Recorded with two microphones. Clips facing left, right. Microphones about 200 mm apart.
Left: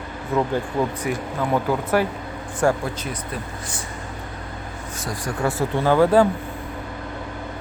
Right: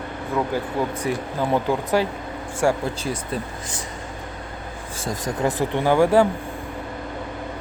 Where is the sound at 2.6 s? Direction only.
10° right (ahead or behind).